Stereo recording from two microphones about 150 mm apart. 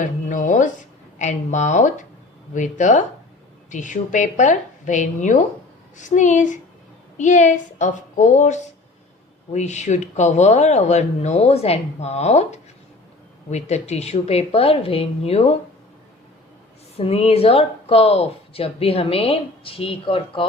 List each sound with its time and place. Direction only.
0.0 s a woman's voice: 60° left (ahead or behind); by 15.5 s 45° left (ahead or behind)
17.0 s speech: 40° left (ahead or behind)